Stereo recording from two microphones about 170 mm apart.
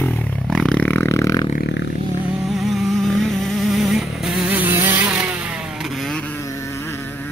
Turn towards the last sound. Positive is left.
turn(degrees=0)  # may be behind; listen again after turning